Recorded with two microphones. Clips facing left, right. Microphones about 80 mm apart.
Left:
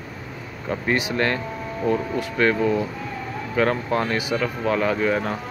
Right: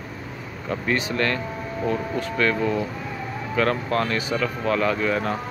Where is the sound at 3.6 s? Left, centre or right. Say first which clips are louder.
Left 1 dB; centre.